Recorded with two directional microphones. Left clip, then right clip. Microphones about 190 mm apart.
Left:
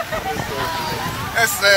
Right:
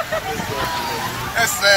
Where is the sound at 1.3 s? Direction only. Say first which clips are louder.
Left 1 dB; 40° left (ahead or behind).